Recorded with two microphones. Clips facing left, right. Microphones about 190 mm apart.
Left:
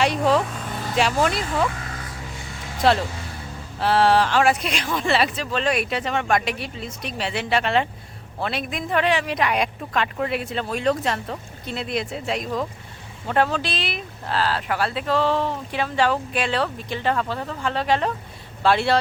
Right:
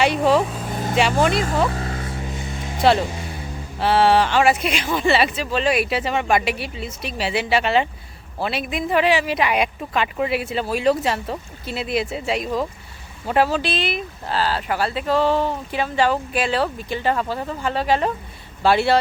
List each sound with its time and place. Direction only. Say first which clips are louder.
0.0 s speech: right 2 dB; centre (ahead or behind)
0.7 s vehicle: right 4 dB; 40° right (ahead or behind)
1.3 s speech: right 5 dB; 50° right (ahead or behind)
1.6 s vehicle: right 3 dB; 35° right (ahead or behind)
3.0 s speech: right 3 dB; 15° right (ahead or behind)
3.8 s speech: right 2 dB; centre (ahead or behind)